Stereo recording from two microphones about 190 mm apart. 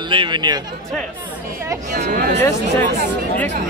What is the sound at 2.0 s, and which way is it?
Speech, 50° right (ahead or behind).